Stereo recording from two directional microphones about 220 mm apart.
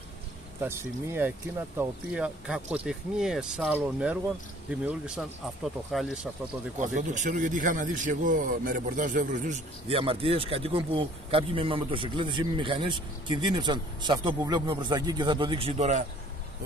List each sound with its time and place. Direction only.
0.7 s speech: 10° right (ahead or behind)
6.8 s a man's voice: 35° right (ahead or behind)